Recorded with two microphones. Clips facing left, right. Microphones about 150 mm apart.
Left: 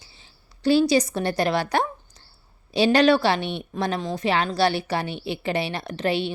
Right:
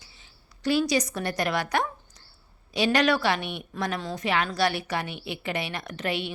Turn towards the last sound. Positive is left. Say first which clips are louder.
# left 6 dB
turn(degrees=30)  # may be behind; listen again after turning